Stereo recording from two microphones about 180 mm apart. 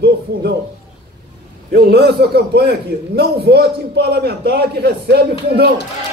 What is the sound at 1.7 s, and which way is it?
Speech, 60° right (ahead or behind).